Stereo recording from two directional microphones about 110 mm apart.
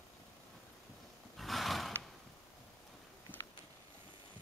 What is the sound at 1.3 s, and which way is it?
Wild animals, centre (ahead or behind).